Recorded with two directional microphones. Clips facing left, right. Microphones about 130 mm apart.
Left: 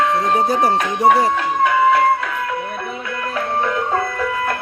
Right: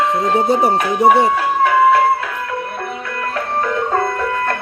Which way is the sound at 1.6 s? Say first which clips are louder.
Right 2 dB; centre (ahead or behind).